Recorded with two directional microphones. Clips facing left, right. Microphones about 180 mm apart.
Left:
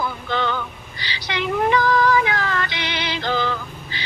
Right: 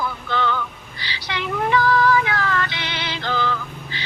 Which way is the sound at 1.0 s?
15° left (ahead or behind).